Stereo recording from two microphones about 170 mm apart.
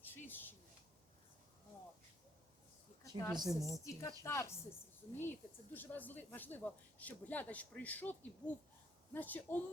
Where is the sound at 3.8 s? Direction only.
20° left (ahead or behind).